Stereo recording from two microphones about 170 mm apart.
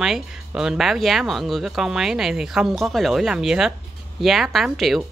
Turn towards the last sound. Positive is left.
turn(degrees=0)  # may be behind; listen again after turning